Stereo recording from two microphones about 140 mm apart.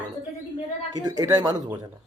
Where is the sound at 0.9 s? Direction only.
25° right (ahead or behind).